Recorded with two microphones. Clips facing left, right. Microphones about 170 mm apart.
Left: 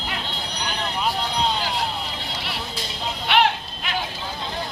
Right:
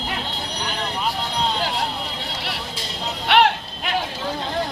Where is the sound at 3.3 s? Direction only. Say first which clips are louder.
Right 3 dB; 55° right (ahead or behind).